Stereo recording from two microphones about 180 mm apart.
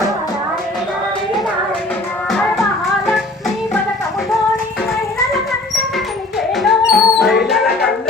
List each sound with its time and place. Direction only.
6.6 s music: centre (ahead or behind)